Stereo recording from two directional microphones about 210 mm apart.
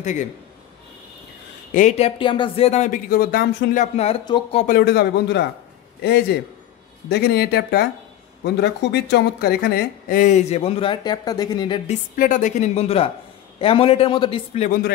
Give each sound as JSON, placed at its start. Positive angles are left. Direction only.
{"t": 0.0, "sound": "speech", "side_deg": 35}
{"t": 1.7, "sound": "speech", "side_deg": 35}
{"t": 4.7, "sound": "speech", "side_deg": 50}
{"t": 7.1, "sound": "speech", "side_deg": 50}
{"t": 11.9, "sound": "a man's voice", "side_deg": 40}